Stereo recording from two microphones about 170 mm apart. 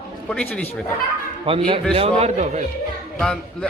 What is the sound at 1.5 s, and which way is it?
A man's voice, 30° right (ahead or behind).